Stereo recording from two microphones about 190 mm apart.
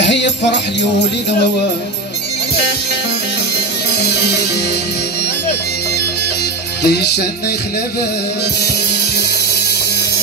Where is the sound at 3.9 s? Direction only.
60° left (ahead or behind).